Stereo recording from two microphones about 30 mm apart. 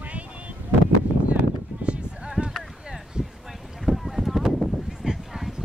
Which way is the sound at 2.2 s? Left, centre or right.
Right.